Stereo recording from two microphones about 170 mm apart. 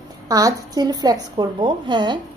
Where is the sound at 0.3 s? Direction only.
20° right (ahead or behind).